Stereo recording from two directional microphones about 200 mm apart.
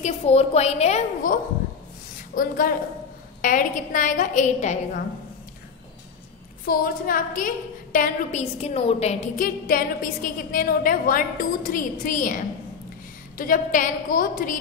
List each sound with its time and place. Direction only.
0.0 s a woman's voice: 30° left (ahead or behind)
6.6 s a woman's voice: 45° left (ahead or behind)
13.4 s a woman's voice: 45° left (ahead or behind)